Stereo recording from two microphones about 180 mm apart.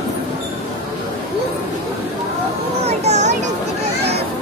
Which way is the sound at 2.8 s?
40° right (ahead or behind).